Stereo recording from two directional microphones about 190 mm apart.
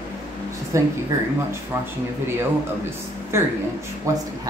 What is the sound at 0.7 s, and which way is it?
Speech, 15° right (ahead or behind).